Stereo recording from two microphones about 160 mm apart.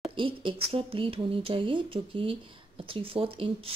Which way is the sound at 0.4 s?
35° right (ahead or behind).